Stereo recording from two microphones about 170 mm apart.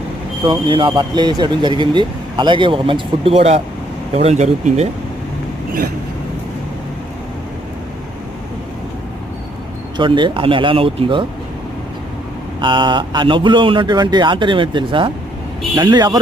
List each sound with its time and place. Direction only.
0.4 s speech: 30° right (ahead or behind)
10.0 s speech: 30° right (ahead or behind)
12.5 s speech: 30° right (ahead or behind)